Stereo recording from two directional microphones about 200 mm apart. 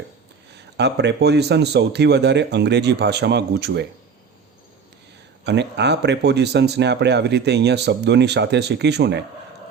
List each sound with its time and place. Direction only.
0.5 s speech: 55° right (ahead or behind)
5.5 s speech: 60° right (ahead or behind)